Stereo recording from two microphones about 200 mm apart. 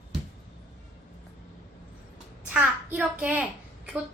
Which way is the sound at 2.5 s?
5° right (ahead or behind).